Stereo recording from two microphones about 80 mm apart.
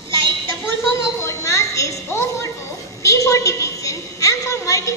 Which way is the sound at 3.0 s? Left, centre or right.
Left.